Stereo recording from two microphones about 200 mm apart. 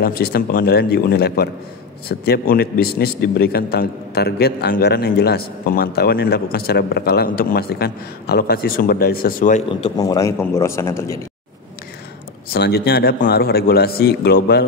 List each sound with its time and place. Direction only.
0.0 s a man's voice: 50° left (ahead or behind)
9.8 s a man's voice: 25° left (ahead or behind)
12.5 s a man's voice: 55° left (ahead or behind)